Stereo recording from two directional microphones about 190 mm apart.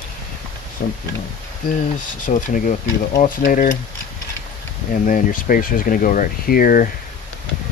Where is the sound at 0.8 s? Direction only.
50° left (ahead or behind).